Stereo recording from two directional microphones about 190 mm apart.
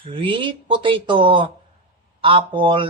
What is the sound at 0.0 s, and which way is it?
Speech, 25° right (ahead or behind).